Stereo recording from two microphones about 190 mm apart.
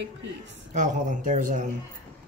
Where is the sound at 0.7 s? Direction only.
40° right (ahead or behind).